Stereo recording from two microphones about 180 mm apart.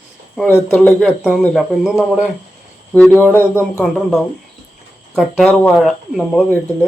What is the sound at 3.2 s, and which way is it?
Speech, 10° left (ahead or behind).